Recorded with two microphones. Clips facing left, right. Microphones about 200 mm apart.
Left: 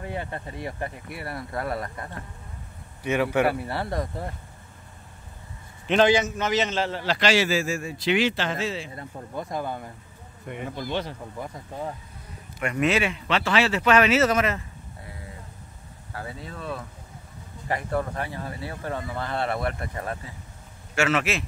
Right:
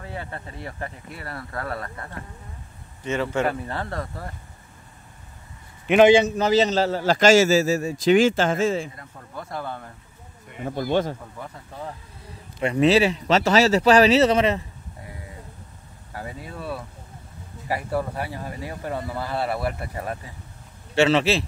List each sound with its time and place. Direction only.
0.0 s speech: 20° left (ahead or behind)
5.9 s a man's voice: 15° right (ahead or behind)
6.1 s a man's voice: 35° right (ahead or behind)
8.9 s speech: 20° left (ahead or behind)
10.7 s a man's voice: 50° right (ahead or behind)
11.3 s speech: 15° left (ahead or behind)
12.5 s speech: 30° right (ahead or behind)
16.1 s speech: 15° right (ahead or behind)
20.9 s speech: 30° right (ahead or behind)